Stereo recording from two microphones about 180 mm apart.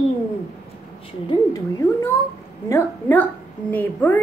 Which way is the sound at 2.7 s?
10° left (ahead or behind).